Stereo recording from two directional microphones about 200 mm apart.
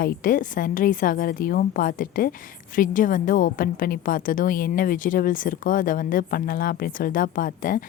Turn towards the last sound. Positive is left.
turn(degrees=45)  # may be behind; listen again after turning